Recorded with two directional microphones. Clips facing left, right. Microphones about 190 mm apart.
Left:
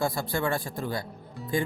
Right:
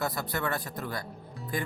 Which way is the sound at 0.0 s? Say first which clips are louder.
Left 4 dB; 30° left (ahead or behind).